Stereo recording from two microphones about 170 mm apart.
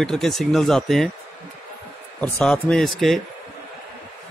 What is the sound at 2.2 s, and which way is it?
Speech, 5° left (ahead or behind).